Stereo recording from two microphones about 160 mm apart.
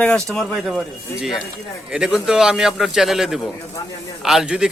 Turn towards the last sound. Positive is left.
turn(degrees=-5)  # may be behind; listen again after turning